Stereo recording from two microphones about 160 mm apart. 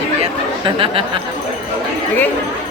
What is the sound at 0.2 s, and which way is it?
Chatter, 35° right (ahead or behind).